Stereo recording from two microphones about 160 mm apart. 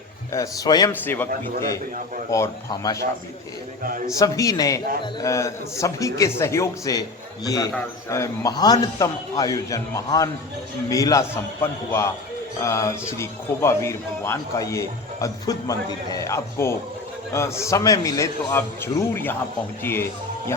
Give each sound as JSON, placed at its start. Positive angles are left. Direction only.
{"t": 0.3, "sound": "speech", "side_deg": 25}
{"t": 1.0, "sound": "a man's voice", "side_deg": 10}
{"t": 2.3, "sound": "speech", "side_deg": 20}
{"t": 4.0, "sound": "a man's voice", "side_deg": 20}